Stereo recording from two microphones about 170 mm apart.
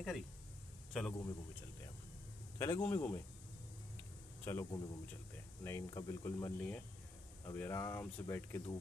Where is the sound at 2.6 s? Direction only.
15° left (ahead or behind).